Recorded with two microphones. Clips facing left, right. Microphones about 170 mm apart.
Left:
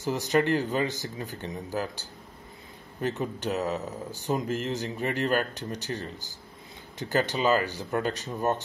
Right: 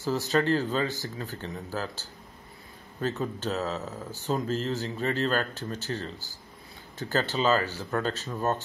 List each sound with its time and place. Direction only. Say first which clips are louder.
0.0 s speech: left 1 dB; 15° left (ahead or behind)